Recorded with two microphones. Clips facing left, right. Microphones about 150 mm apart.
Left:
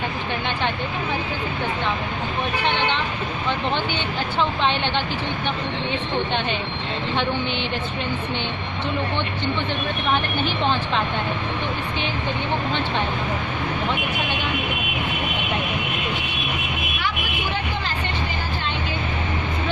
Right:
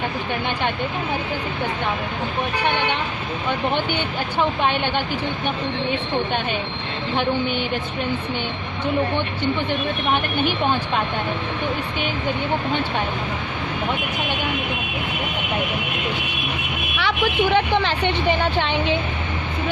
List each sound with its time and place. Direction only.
2.6 s a woman's voice: 10° right (ahead or behind)
17.0 s speech: 70° right (ahead or behind)